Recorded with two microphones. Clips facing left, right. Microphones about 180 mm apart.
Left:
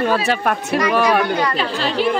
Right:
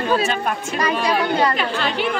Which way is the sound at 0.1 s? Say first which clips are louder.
Left 2 dB; 70° left (ahead or behind).